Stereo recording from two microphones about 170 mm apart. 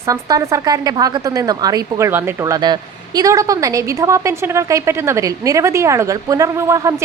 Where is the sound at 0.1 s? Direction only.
20° right (ahead or behind).